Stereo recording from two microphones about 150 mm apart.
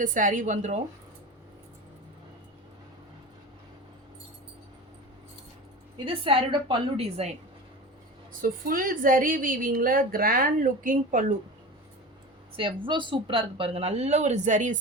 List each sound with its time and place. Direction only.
0.0 s a woman's voice: 60° right (ahead or behind)
6.1 s a woman's voice: 35° right (ahead or behind)
8.3 s a woman's voice: 70° right (ahead or behind)
12.5 s speech: 35° right (ahead or behind); by 14.8 s 55° right (ahead or behind)